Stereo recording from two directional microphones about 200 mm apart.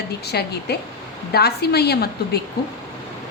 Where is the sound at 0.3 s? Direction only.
55° left (ahead or behind).